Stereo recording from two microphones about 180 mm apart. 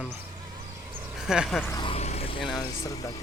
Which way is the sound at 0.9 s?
5° right (ahead or behind).